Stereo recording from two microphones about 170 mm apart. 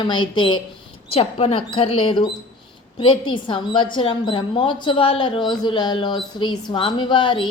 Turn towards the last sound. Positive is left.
turn(degrees=25)  # may be behind; listen again after turning